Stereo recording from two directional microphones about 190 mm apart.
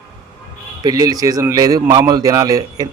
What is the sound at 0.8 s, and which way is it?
A man's voice, 20° right (ahead or behind).